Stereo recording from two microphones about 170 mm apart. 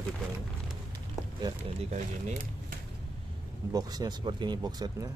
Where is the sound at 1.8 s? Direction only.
40° right (ahead or behind).